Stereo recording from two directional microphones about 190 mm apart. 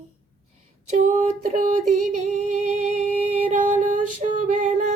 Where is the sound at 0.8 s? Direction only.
40° right (ahead or behind).